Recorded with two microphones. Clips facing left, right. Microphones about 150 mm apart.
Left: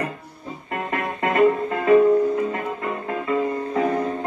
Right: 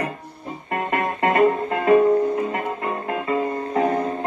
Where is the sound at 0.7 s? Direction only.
35° right (ahead or behind).